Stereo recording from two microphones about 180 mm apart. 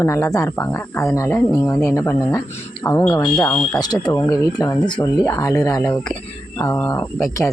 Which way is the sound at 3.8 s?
20° left (ahead or behind).